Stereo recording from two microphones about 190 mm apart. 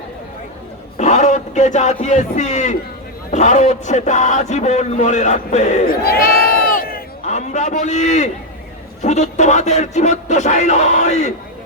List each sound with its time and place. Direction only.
0.9 s a man's voice: 40° left (ahead or behind)
7.3 s a man's voice: 40° left (ahead or behind)